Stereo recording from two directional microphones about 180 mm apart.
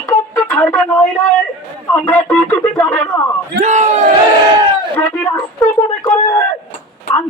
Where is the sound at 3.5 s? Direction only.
45° right (ahead or behind).